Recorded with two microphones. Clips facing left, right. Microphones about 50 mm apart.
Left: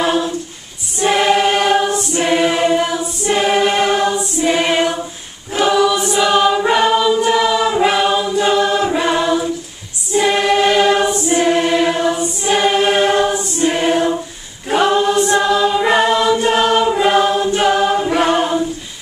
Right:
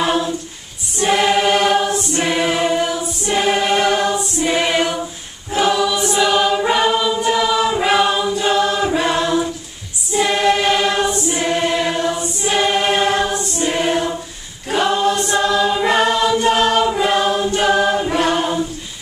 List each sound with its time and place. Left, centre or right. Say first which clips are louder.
0.0 s a capella: left 2 dB; centre
0.9 s choir: left 2 dB; centre
16.5 s choir: left 2 dB; left
16.8 s choir: left 3 dB; centre
18.2 s a capella: left 3 dB; centre